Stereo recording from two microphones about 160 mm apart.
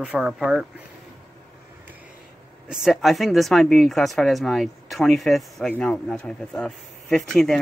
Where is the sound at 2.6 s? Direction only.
5° right (ahead or behind).